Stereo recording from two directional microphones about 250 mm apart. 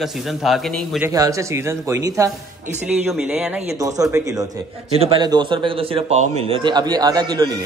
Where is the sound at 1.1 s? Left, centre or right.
Centre.